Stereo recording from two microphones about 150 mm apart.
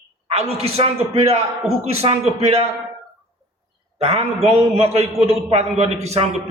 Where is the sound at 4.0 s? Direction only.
45° right (ahead or behind).